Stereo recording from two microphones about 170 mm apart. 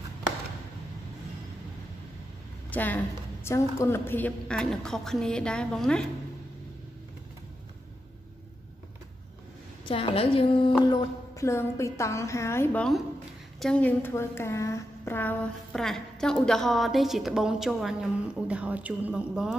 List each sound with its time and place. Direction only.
2.7 s a woman's voice: 10° left (ahead or behind)
9.8 s a woman's voice: 35° left (ahead or behind); by 19.5 s 5° right (ahead or behind)